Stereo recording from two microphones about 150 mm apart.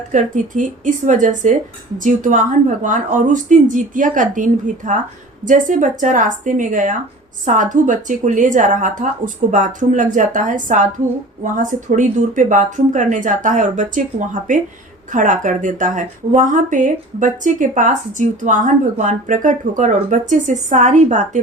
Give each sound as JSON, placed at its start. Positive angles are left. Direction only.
{"t": 0.1, "sound": "speech", "side_deg": -60}